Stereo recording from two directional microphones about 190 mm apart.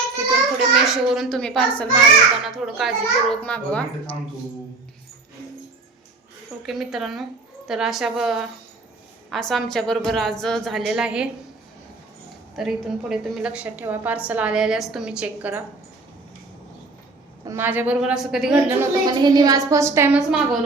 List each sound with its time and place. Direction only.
0.9 s a child's voice: centre (ahead or behind)
6.6 s a child's voice: centre (ahead or behind)
12.5 s a child's voice: centre (ahead or behind)
17.5 s a child's voice: 10° right (ahead or behind)
18.8 s a woman's voice: 20° right (ahead or behind)
20.1 s a child's voice: 5° right (ahead or behind)